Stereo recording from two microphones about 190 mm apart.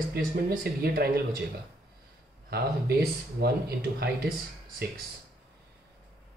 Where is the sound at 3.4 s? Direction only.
55° right (ahead or behind).